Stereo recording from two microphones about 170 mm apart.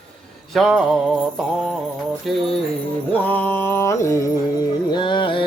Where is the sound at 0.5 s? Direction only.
Centre (ahead or behind).